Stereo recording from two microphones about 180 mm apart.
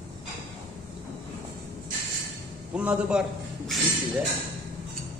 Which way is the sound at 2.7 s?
5° right (ahead or behind).